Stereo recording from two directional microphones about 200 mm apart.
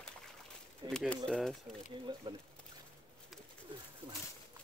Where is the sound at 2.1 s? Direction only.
20° right (ahead or behind).